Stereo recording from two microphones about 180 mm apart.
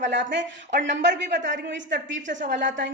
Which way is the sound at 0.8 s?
80° right.